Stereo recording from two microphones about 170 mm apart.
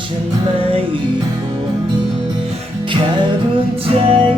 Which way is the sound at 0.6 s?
30° right (ahead or behind).